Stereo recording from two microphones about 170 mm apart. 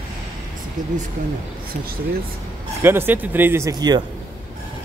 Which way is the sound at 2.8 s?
15° right (ahead or behind).